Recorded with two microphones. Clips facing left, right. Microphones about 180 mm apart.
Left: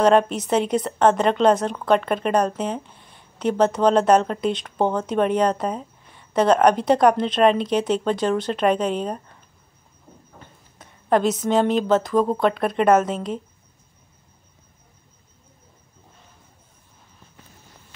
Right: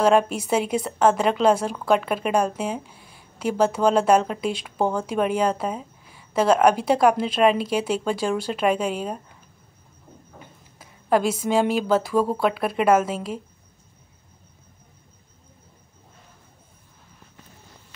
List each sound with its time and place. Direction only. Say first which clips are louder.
0.0 s speech: left 2 dB; 5° right (ahead or behind)
10.4 s a woman's voice: even; 5° right (ahead or behind)